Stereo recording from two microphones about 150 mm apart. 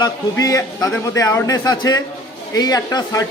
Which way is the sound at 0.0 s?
25° left (ahead or behind).